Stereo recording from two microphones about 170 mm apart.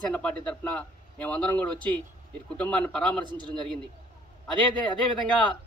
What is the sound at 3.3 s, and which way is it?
Speech, 25° right (ahead or behind).